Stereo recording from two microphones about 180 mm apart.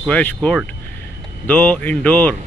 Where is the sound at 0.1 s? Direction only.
10° left (ahead or behind).